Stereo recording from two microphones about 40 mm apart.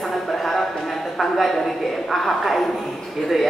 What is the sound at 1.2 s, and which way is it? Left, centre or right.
A woman's voice, centre.